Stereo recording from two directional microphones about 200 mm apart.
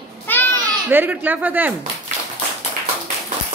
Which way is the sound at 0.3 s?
10° left (ahead or behind).